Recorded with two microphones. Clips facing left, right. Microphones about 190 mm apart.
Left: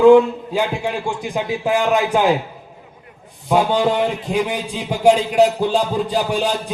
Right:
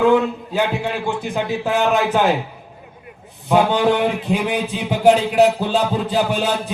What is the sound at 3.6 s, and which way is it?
Speech, 65° right (ahead or behind).